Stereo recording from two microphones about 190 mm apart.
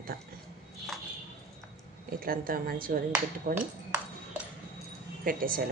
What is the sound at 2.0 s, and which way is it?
A woman's voice, 50° right (ahead or behind).